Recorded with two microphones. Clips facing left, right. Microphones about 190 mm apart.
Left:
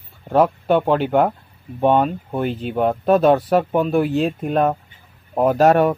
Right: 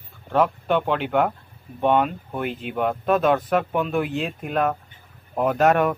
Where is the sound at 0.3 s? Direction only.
40° left (ahead or behind).